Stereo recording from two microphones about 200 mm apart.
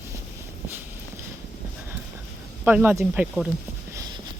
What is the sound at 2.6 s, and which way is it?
Speech, 10° right (ahead or behind).